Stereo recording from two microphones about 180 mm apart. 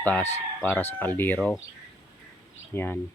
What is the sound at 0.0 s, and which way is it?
Speech, 10° left (ahead or behind).